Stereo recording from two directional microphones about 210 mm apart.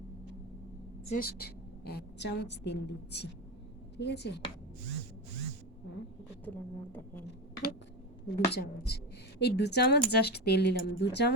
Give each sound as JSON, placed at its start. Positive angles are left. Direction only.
{"t": 1.2, "sound": "a woman's voice", "side_deg": 50}
{"t": 6.4, "sound": "speech", "side_deg": 10}
{"t": 8.4, "sound": "a woman's voice", "side_deg": 50}